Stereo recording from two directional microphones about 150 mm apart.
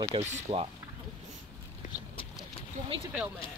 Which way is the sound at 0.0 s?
40° right (ahead or behind).